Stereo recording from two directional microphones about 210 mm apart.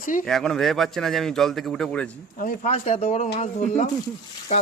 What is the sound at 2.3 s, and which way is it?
Speech, 35° left (ahead or behind).